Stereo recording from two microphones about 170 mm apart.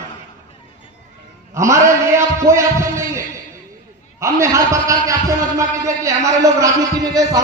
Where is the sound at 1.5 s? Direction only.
15° right (ahead or behind).